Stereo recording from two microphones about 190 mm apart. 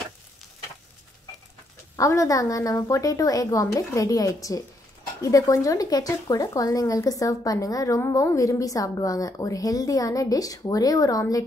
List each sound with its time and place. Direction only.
2.0 s speech: 15° left (ahead or behind)